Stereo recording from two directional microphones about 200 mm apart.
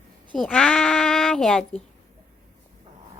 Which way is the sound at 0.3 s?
5° left (ahead or behind).